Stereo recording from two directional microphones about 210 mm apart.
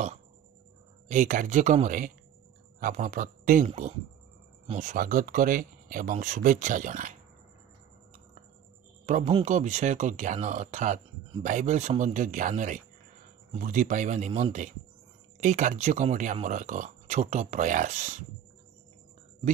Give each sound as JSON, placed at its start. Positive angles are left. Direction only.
{"t": 1.0, "sound": "speech", "side_deg": -35}
{"t": 9.0, "sound": "speech", "side_deg": -35}